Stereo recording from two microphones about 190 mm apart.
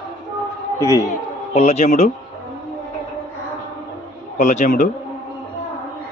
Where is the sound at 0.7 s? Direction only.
15° left (ahead or behind).